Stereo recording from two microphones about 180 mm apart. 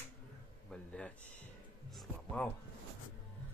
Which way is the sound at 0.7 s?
5° left (ahead or behind).